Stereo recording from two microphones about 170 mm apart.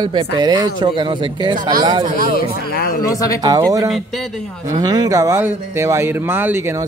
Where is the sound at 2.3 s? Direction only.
60° left (ahead or behind).